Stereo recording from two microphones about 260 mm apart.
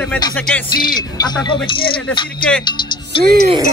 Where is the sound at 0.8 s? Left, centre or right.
Centre.